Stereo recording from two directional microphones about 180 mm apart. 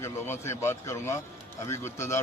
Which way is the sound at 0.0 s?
15° left (ahead or behind).